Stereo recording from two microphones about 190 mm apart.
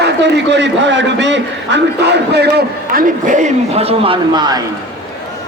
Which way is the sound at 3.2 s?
40° right (ahead or behind).